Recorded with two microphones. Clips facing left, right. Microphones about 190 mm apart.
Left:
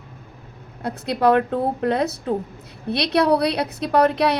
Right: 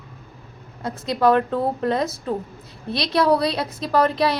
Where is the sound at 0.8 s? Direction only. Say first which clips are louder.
Even; 60° left (ahead or behind).